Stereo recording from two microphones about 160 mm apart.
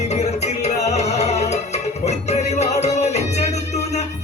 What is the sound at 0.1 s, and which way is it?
Music, 45° left (ahead or behind).